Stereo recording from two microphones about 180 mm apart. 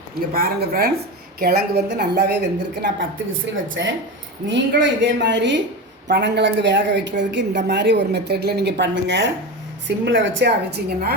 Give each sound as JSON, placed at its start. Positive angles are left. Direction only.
{"t": 0.3, "sound": "a woman's voice", "side_deg": -55}
{"t": 3.4, "sound": "a woman's voice", "side_deg": -90}
{"t": 9.8, "sound": "a woman's voice", "side_deg": -90}